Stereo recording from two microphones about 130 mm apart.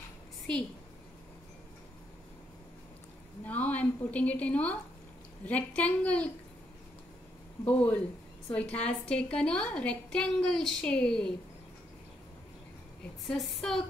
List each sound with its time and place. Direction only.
3.4 s a woman's voice: 10° left (ahead or behind)
7.6 s a woman's voice: 10° left (ahead or behind)
13.3 s a woman's voice: 5° left (ahead or behind)